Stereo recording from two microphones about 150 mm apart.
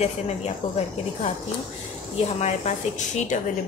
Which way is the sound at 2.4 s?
45° left (ahead or behind).